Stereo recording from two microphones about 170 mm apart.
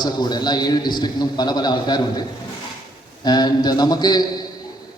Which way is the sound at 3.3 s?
25° left (ahead or behind).